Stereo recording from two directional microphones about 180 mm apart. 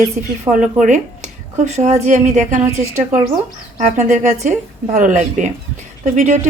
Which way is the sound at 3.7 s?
45° right (ahead or behind).